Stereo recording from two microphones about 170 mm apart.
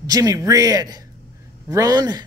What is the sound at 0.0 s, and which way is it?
Speech, 20° right (ahead or behind).